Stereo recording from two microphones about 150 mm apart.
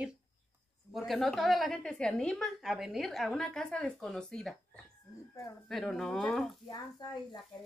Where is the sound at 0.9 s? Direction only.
Centre (ahead or behind).